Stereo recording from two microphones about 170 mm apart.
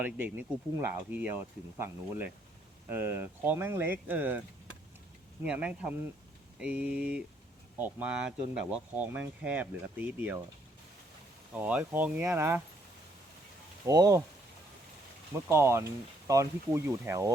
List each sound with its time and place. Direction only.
0.0 s speech: 10° right (ahead or behind)
5.5 s speech: 5° right (ahead or behind)
11.5 s speech: 10° right (ahead or behind)
13.8 s speech: 20° right (ahead or behind)
15.4 s speech: 15° right (ahead or behind)